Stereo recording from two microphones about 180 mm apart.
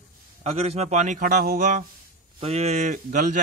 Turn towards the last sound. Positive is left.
turn(degrees=-45)  # may be behind; listen again after turning